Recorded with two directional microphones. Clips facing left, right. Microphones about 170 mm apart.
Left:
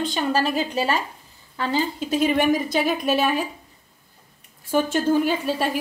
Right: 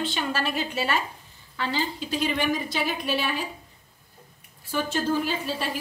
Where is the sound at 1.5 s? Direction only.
45° left (ahead or behind).